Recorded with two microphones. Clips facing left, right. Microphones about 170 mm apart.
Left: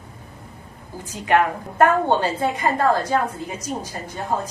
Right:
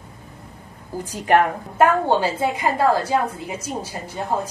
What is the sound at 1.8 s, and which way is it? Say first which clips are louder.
A woman's voice: even; 10° right (ahead or behind).